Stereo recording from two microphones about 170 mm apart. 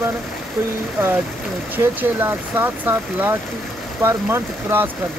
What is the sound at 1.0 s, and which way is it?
Speech, 15° right (ahead or behind).